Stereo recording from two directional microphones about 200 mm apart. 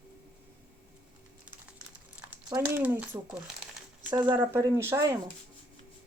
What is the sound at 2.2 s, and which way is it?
Speech, 15° right (ahead or behind).